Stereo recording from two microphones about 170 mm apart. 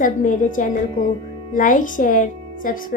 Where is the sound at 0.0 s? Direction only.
50° left (ahead or behind).